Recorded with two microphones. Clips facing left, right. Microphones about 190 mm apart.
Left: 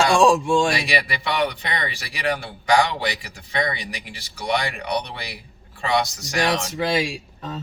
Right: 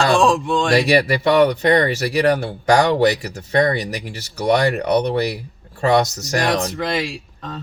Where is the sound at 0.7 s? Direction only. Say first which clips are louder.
Right 9 dB; 45° right (ahead or behind).